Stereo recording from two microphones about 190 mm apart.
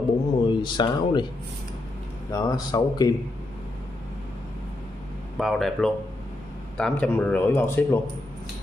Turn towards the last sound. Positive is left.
turn(degrees=15)  # may be behind; listen again after turning